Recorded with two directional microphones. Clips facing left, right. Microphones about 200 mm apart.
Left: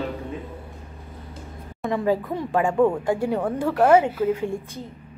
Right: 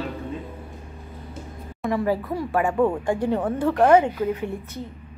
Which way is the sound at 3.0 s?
10° left (ahead or behind).